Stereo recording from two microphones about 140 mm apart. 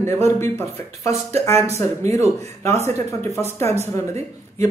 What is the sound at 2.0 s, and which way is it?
Speech, 55° right (ahead or behind).